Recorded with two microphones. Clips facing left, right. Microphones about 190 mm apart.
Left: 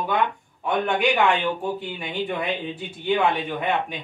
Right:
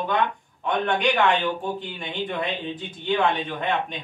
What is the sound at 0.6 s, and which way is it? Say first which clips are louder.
Speech: left 1 dB; 10° left (ahead or behind).